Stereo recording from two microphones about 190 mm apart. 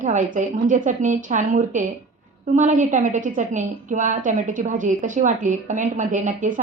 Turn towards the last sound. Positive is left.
turn(degrees=-45)  # may be behind; listen again after turning